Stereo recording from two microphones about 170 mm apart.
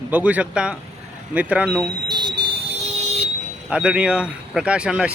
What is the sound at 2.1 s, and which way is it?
Fire alarm, 25° right (ahead or behind).